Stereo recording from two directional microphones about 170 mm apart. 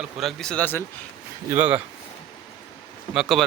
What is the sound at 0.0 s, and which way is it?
Speech, centre (ahead or behind).